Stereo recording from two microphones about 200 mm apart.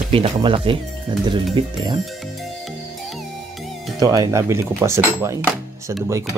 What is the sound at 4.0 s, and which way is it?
Dishes, 20° right (ahead or behind).